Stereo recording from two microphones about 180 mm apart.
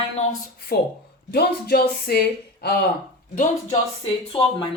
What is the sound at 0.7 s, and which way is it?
Speech, 60° left (ahead or behind).